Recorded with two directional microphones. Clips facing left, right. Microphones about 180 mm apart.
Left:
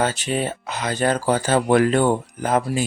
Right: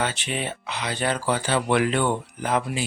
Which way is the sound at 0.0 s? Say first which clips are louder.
Left 5 dB; 40° left (ahead or behind).